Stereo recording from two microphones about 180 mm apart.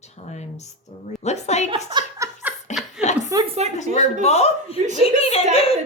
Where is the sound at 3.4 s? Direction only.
35° right (ahead or behind).